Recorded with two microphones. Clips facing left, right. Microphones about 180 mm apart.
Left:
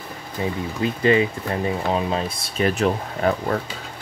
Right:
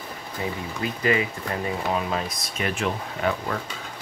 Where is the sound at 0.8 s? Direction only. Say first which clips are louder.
Left 6 dB; 30° left (ahead or behind).